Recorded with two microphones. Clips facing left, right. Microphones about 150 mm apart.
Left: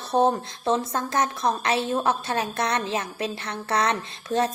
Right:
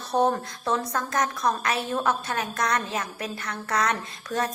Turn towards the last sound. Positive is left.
turn(degrees=25)  # may be behind; listen again after turning